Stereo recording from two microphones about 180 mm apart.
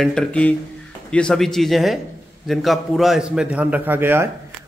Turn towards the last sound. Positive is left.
turn(degrees=-10)  # may be behind; listen again after turning